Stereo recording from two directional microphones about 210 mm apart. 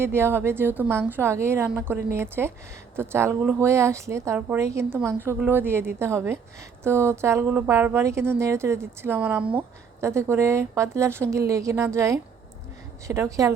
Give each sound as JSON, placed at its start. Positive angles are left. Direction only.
{"t": 0.0, "sound": "a woman's voice", "side_deg": -10}